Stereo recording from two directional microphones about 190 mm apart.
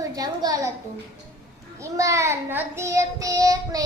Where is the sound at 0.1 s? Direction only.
20° right (ahead or behind).